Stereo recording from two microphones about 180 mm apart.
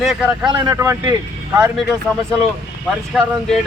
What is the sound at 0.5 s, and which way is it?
Speech, 20° right (ahead or behind).